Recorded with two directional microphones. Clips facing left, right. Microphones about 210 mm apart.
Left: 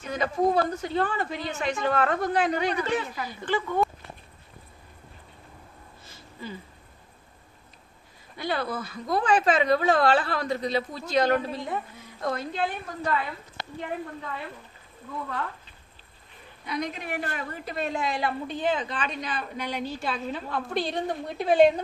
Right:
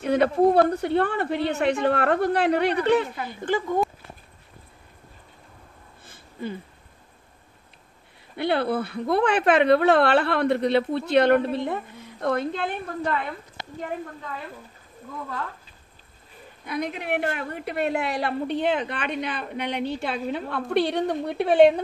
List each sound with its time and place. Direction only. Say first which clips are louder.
0.0 s a woman's voice: right 6 dB; 65° right (ahead or behind); by 3.7 s 45° right (ahead or behind)
6.0 s wheeze: right 7 dB; 55° right (ahead or behind)
8.4 s a woman's voice: right 6 dB; 60° right (ahead or behind)
16.6 s a woman's voice: right 3 dB; 55° right (ahead or behind)